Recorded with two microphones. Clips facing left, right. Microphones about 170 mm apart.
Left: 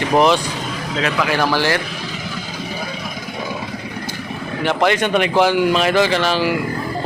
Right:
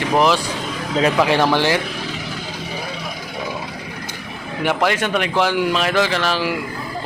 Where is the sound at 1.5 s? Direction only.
15° right (ahead or behind).